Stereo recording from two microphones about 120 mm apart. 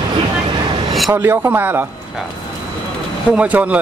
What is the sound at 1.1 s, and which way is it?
Speech, 20° right (ahead or behind).